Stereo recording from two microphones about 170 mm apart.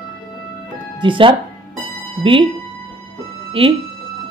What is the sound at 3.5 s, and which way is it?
Speech, 30° right (ahead or behind).